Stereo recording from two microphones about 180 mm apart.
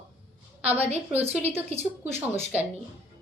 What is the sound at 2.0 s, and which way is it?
Speech, 10° right (ahead or behind).